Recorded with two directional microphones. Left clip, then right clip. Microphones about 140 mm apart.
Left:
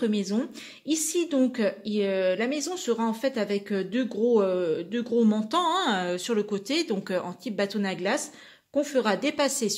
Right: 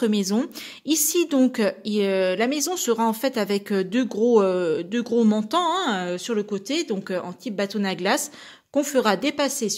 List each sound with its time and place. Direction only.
0.0 s a woman's voice: 45° right (ahead or behind)
5.5 s speech: 20° right (ahead or behind)
8.7 s a woman's voice: 40° right (ahead or behind)
9.1 s speech: 25° right (ahead or behind)